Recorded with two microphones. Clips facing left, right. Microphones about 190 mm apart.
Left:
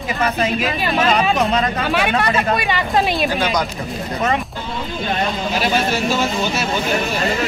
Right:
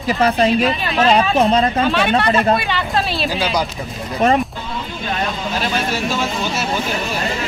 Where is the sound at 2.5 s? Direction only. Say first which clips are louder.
Left 1 dB; 10° left (ahead or behind).